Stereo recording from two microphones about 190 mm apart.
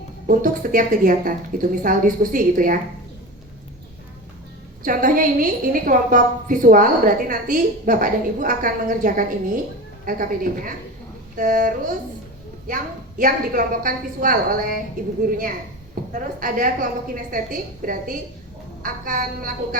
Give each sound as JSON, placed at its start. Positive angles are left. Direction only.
{"t": 0.3, "sound": "a woman's voice", "side_deg": -45}
{"t": 4.8, "sound": "a woman's voice", "side_deg": -45}